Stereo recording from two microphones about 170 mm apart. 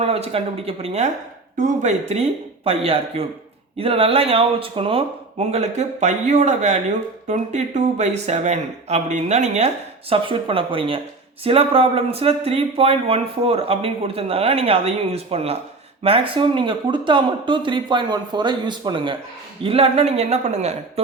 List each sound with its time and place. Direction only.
0.0 s speech: 35° right (ahead or behind)